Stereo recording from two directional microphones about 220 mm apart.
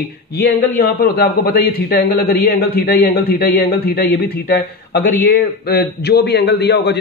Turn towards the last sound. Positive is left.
turn(degrees=50)  # may be behind; listen again after turning